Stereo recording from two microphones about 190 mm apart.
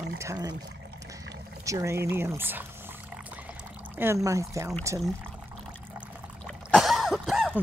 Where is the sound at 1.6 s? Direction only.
15° right (ahead or behind).